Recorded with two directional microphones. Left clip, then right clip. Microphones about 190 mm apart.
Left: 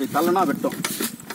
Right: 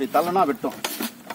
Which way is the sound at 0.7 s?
10° right (ahead or behind).